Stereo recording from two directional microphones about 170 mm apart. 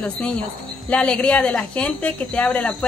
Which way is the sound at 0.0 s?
10° left (ahead or behind).